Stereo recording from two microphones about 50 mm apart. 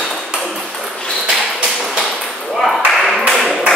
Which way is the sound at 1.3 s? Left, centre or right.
Centre.